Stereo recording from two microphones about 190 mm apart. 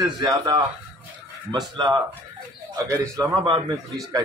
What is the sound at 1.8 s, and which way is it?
A man's voice, 25° right (ahead or behind).